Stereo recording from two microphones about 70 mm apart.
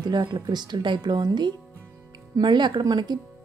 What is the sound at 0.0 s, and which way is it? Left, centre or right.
Speech, right.